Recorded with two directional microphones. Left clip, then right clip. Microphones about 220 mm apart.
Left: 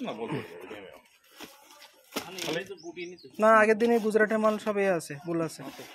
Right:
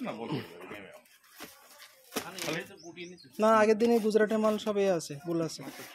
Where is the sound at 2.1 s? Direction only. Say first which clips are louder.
Left 2 dB; 20° right (ahead or behind).